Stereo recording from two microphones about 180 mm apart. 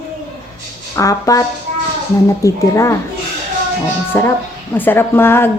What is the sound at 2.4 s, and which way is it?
Speech, 15° left (ahead or behind).